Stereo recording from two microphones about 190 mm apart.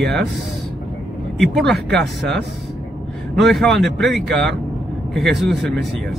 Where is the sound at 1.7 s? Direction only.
60° right (ahead or behind).